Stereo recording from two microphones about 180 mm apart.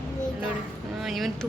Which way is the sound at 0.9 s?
Centre (ahead or behind).